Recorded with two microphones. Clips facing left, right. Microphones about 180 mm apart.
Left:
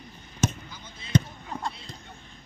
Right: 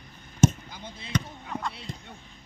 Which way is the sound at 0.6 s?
60° right (ahead or behind).